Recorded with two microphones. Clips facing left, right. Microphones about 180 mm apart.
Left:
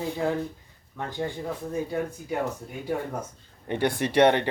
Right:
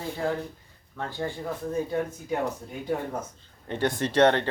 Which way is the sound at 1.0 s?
15° left (ahead or behind).